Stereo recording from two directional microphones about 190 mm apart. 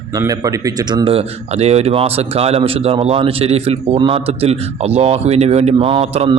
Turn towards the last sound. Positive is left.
turn(degrees=-30)  # may be behind; listen again after turning